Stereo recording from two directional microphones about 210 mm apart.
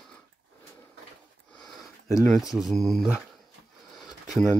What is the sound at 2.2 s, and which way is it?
Speech, centre (ahead or behind).